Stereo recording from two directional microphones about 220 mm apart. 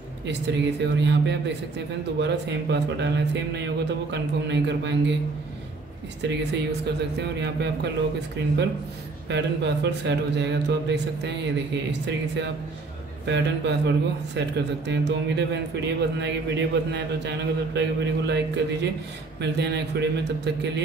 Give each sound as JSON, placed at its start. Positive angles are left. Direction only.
{"t": 0.3, "sound": "speech", "side_deg": -50}
{"t": 6.2, "sound": "speech", "side_deg": -50}
{"t": 9.3, "sound": "speech", "side_deg": -50}